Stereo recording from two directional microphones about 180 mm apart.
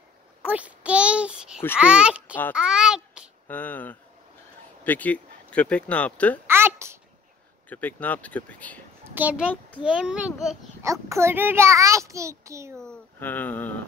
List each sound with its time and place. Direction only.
0.4 s a child's voice: 10° right (ahead or behind)
2.5 s a sound: 5° right (ahead or behind)
3.4 s speech: 10° left (ahead or behind)
6.4 s a sound: 15° right (ahead or behind)
7.7 s speech: 10° left (ahead or behind)
9.1 s a child's voice: 10° right (ahead or behind)
10.8 s a child's voice: 15° right (ahead or behind)
12.7 s speech: 5° left (ahead or behind)